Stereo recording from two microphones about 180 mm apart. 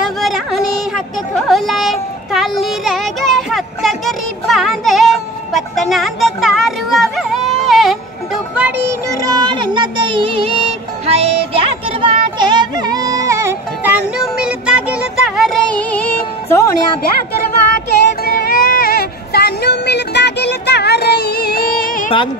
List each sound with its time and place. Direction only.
0.0 s speech: centre (ahead or behind)
7.7 s music: centre (ahead or behind); by 10.3 s 30° right (ahead or behind)
11.5 s music: 30° right (ahead or behind); by 16.6 s 10° left (ahead or behind)
17.0 s a sound: 55° left (ahead or behind)